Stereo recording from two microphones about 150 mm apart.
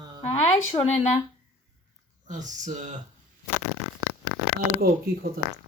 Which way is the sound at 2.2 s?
55° right (ahead or behind).